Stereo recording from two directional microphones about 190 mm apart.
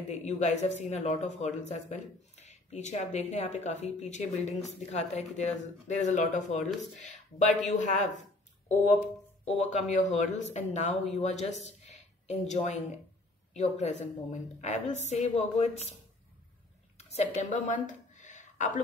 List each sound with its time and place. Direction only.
0.1 s speech: 35° left (ahead or behind)
9.4 s speech: 35° left (ahead or behind)
17.1 s a woman's voice: 35° left (ahead or behind)